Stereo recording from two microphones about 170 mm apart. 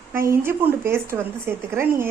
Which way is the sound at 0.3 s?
15° right (ahead or behind).